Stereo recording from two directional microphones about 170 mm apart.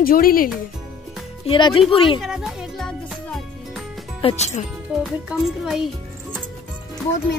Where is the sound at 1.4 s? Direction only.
30° left (ahead or behind).